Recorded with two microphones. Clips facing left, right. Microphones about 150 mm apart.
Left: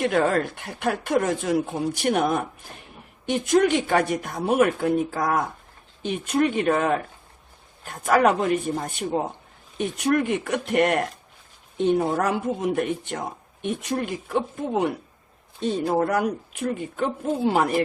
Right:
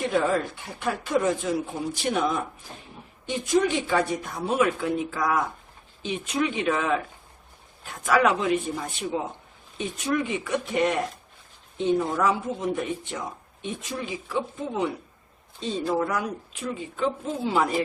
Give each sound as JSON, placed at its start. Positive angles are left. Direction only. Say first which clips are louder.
{"t": 0.0, "sound": "speech", "louder": "left 3 dB", "side_deg": 65}
{"t": 9.7, "sound": "speech", "louder": "left 4 dB", "side_deg": 65}